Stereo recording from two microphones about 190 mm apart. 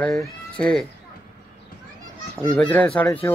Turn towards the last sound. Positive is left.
turn(degrees=10)  # may be behind; listen again after turning